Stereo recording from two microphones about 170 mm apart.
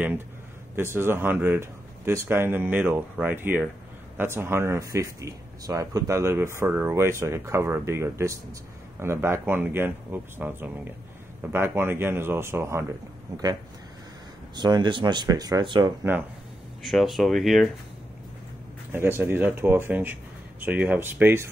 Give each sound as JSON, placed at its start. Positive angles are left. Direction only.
{"t": 0.7, "sound": "speech", "side_deg": -15}
{"t": 14.5, "sound": "speech", "side_deg": -25}
{"t": 16.0, "sound": "speech", "side_deg": -10}
{"t": 16.8, "sound": "speech", "side_deg": 0}
{"t": 18.9, "sound": "speech", "side_deg": -15}